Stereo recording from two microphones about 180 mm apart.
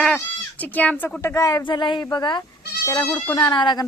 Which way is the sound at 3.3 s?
25° left (ahead or behind).